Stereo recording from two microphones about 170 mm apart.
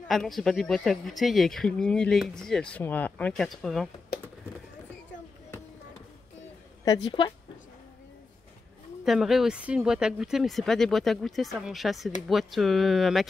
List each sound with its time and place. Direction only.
0.1 s speech: centre (ahead or behind)
6.8 s a woman's voice: 25° left (ahead or behind)
9.0 s speech: centre (ahead or behind)